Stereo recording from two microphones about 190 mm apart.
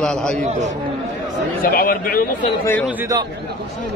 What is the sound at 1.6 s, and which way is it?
Speech, 50° left (ahead or behind).